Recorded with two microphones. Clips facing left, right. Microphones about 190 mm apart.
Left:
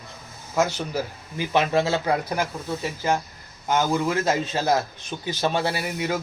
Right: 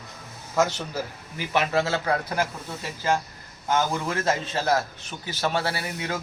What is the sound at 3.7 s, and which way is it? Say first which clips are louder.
A man's voice: left 3 dB; 10° left (ahead or behind).